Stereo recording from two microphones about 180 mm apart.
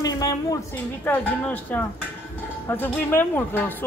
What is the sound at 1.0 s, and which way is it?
Speech, 10° left (ahead or behind).